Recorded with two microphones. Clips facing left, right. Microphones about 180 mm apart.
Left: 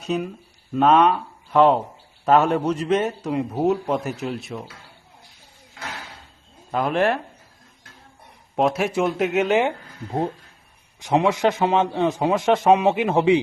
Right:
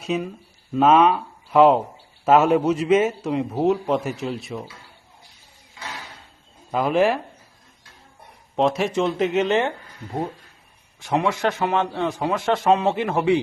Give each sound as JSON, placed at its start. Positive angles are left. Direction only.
{"t": 0.0, "sound": "a man's voice", "side_deg": 0}
{"t": 6.7, "sound": "a man's voice", "side_deg": 0}
{"t": 8.5, "sound": "a man's voice", "side_deg": 5}
{"t": 11.0, "sound": "a man's voice", "side_deg": 20}